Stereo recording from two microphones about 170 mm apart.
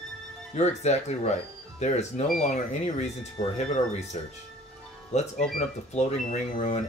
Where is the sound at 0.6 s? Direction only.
40° left (ahead or behind).